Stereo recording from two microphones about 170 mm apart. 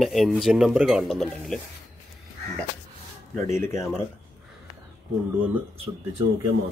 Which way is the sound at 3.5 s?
15° left (ahead or behind).